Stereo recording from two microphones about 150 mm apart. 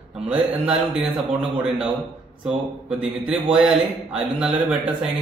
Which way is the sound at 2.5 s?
5° right (ahead or behind).